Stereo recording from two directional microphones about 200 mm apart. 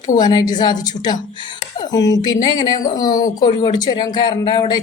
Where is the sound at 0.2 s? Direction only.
20° left (ahead or behind).